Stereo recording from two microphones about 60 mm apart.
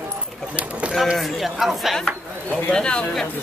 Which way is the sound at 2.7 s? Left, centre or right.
Centre.